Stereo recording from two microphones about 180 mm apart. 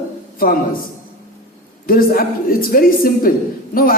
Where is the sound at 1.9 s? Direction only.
55° left (ahead or behind).